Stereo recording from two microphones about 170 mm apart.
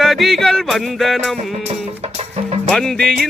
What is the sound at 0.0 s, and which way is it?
Music, centre (ahead or behind).